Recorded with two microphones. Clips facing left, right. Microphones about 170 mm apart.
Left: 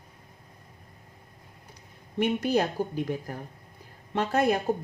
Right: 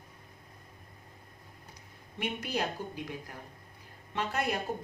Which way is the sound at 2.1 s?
45° left (ahead or behind).